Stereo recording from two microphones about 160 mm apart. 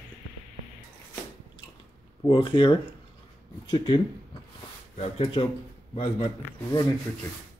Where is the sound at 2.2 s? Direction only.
30° left (ahead or behind).